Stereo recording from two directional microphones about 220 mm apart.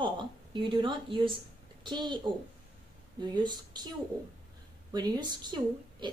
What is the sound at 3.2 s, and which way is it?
Speech, 20° right (ahead or behind).